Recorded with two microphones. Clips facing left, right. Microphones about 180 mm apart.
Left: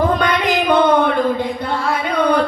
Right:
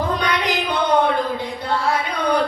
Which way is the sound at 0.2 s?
55° left (ahead or behind).